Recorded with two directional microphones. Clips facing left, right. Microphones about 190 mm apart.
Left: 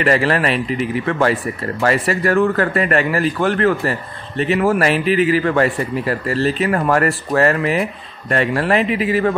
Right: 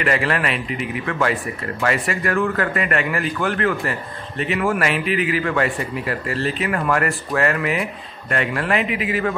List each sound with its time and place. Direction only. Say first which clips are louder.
0.0 s a man's voice: left 5 dB; 35° left (ahead or behind)